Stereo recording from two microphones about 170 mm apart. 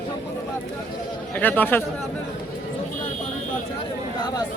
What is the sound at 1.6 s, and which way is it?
Speech, 10° left (ahead or behind).